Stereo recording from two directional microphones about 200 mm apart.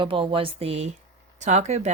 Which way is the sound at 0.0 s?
25° right (ahead or behind).